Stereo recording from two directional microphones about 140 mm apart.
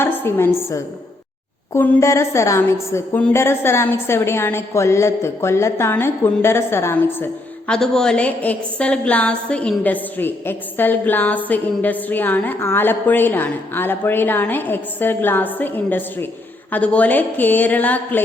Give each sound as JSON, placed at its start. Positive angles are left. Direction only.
{"t": 0.0, "sound": "a woman's voice", "side_deg": 15}
{"t": 7.7, "sound": "a woman's voice", "side_deg": 5}